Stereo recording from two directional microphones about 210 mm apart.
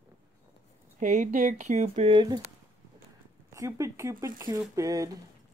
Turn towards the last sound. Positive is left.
turn(degrees=-15)  # may be behind; listen again after turning